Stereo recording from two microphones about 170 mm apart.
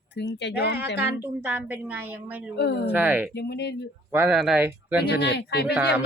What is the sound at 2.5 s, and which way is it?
Speech, 75° left (ahead or behind).